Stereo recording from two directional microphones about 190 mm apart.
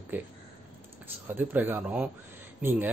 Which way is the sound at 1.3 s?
10° right (ahead or behind).